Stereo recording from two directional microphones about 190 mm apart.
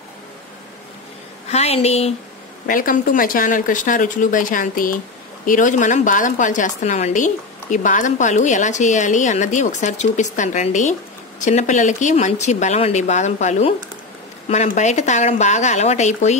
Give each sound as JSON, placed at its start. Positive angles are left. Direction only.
{"t": 1.5, "sound": "a woman's voice", "side_deg": 35}
{"t": 2.6, "sound": "a woman's voice", "side_deg": 45}